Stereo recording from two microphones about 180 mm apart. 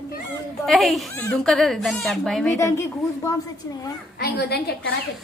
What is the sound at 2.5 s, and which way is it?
Speech, 15° left (ahead or behind).